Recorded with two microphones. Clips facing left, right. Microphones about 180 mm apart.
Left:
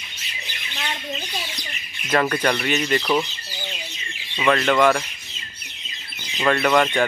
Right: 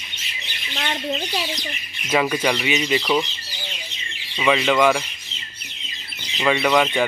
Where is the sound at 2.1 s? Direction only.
5° right (ahead or behind).